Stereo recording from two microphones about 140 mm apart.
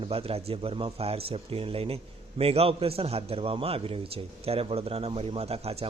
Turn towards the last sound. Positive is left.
turn(degrees=-45)  # may be behind; listen again after turning